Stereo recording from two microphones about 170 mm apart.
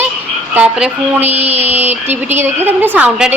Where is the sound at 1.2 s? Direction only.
40° right (ahead or behind).